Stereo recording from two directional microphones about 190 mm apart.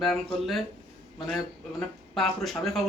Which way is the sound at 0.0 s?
Centre (ahead or behind).